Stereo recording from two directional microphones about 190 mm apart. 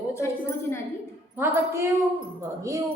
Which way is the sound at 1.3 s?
15° right (ahead or behind).